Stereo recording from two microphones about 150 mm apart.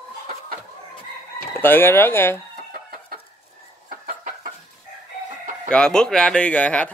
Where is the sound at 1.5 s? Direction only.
15° left (ahead or behind).